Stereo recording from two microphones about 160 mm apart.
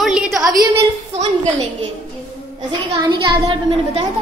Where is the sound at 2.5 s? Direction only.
30° right (ahead or behind).